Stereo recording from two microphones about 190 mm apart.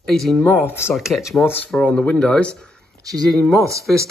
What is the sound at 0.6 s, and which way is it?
Speech, 15° left (ahead or behind).